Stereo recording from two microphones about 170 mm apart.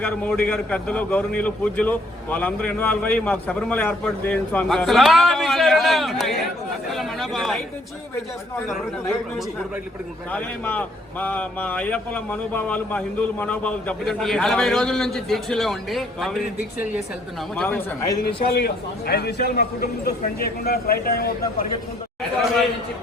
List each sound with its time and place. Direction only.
0.0 s a man's voice: 10° left (ahead or behind)
10.3 s a man's voice: 10° left (ahead or behind)
17.6 s a man's voice: 10° left (ahead or behind)
18.3 s a man's voice: 65° left (ahead or behind)